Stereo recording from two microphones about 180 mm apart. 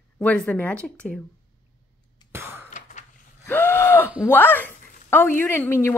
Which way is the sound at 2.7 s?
45° left (ahead or behind).